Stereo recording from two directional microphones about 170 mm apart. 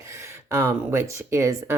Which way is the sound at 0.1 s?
15° right (ahead or behind).